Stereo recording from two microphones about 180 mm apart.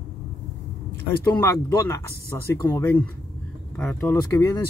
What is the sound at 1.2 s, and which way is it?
Speech, 15° left (ahead or behind).